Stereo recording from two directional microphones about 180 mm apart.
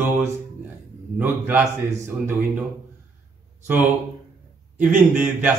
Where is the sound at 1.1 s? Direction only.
10° right (ahead or behind).